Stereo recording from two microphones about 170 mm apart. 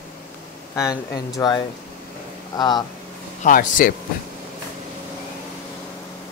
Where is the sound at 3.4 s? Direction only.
50° left (ahead or behind).